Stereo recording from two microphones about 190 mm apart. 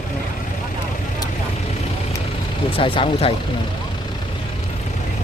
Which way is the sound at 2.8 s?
30° left (ahead or behind).